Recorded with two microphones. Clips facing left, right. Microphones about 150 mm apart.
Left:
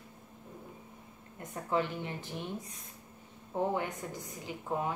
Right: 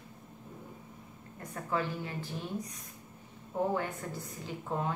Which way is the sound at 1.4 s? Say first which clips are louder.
Left 2 dB; 20° left (ahead or behind).